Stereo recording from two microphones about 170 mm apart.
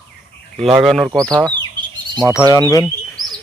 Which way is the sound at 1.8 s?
25° right (ahead or behind).